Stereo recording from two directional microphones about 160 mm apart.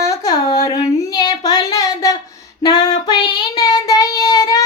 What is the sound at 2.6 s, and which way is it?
Child singing, 25° left (ahead or behind).